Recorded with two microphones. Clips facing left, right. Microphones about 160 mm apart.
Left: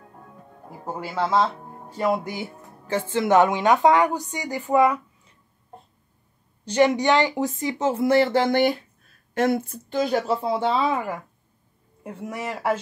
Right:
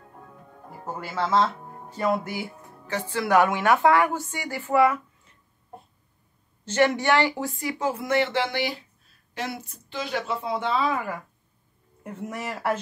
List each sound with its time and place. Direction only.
0.8 s speech: 15° left (ahead or behind)
6.6 s speech: 15° left (ahead or behind)